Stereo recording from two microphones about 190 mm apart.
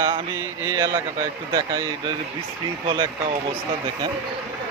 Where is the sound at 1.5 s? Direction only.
25° right (ahead or behind).